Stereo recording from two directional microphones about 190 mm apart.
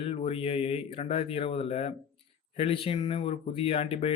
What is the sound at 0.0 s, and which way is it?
Speech, 30° left (ahead or behind).